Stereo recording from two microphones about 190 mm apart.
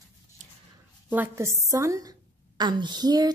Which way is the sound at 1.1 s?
10° right (ahead or behind).